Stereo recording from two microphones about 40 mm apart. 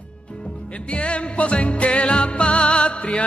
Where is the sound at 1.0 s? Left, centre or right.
Left.